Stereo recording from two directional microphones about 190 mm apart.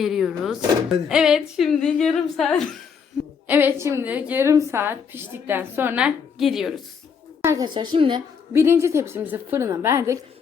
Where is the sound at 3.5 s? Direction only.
10° right (ahead or behind).